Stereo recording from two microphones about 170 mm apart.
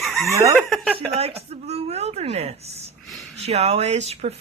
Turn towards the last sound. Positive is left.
turn(degrees=-40)  # may be behind; listen again after turning